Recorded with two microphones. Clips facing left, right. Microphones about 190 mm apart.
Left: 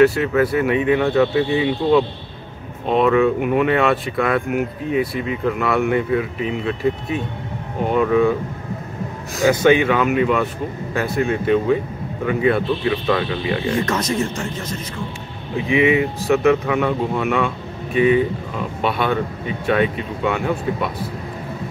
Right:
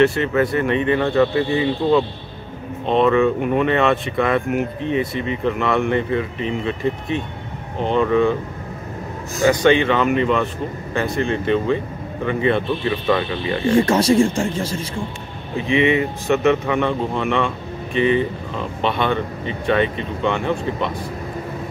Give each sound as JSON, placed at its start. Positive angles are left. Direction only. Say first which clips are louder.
{"t": 0.0, "sound": "speech", "louder": "left 2 dB", "side_deg": 0}
{"t": 9.4, "sound": "speech", "louder": "left 1 dB", "side_deg": 5}
{"t": 13.8, "sound": "speech", "louder": "right 6 dB", "side_deg": -30}
{"t": 15.5, "sound": "speech", "louder": "left 1 dB", "side_deg": 5}